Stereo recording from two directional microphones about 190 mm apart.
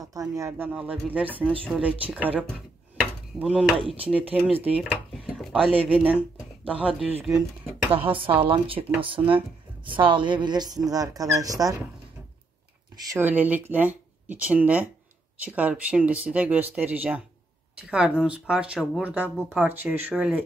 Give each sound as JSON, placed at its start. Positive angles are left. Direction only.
{"t": 0.0, "sound": "speech", "side_deg": -20}
{"t": 8.2, "sound": "a woman's voice", "side_deg": -30}
{"t": 13.1, "sound": "speech", "side_deg": -10}